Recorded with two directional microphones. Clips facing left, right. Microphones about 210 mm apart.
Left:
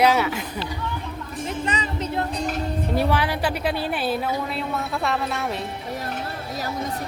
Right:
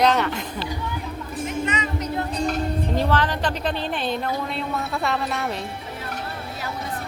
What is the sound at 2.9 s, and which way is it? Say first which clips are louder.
A woman's voice: left 1 dB; 10° left (ahead or behind).